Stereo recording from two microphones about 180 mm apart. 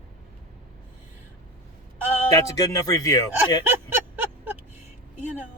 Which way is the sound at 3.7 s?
10° right (ahead or behind).